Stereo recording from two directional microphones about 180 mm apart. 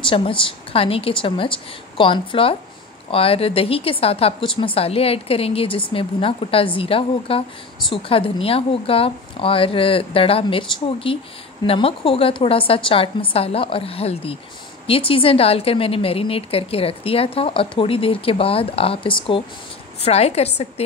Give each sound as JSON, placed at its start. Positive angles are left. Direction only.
{"t": 0.0, "sound": "a woman's voice", "side_deg": 30}